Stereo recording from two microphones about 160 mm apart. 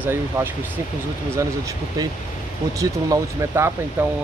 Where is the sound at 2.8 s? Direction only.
20° right (ahead or behind).